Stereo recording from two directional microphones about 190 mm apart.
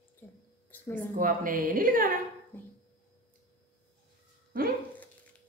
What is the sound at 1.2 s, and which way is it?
Speech, 45° right (ahead or behind).